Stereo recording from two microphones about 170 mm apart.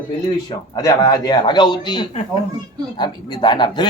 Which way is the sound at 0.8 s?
20° left (ahead or behind).